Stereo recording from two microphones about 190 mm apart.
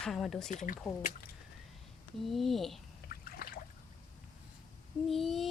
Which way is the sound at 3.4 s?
55° left (ahead or behind).